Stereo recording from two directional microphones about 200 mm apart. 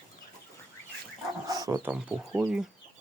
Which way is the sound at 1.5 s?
20° right (ahead or behind).